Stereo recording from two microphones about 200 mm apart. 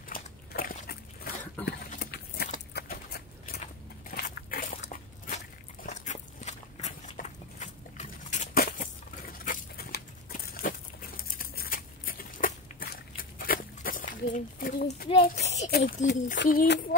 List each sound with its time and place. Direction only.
0.1 s dog: 45° left (ahead or behind)
1.6 s speech: 10° left (ahead or behind)
2.0 s a sound: 55° left (ahead or behind)
5.9 s walk: 35° left (ahead or behind)
9.4 s patter: 45° left (ahead or behind)
15.4 s a sound: 35° left (ahead or behind)
16.1 s speech: 50° left (ahead or behind)